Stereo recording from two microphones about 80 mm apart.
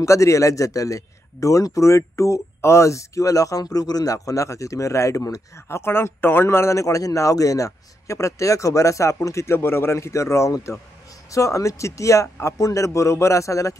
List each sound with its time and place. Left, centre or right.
0.0 s speech: left